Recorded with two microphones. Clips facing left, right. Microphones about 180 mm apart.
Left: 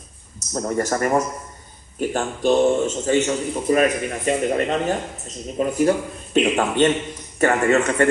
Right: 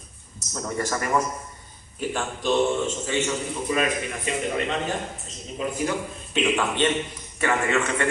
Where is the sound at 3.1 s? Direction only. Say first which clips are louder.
Left 6 dB; 45° left (ahead or behind).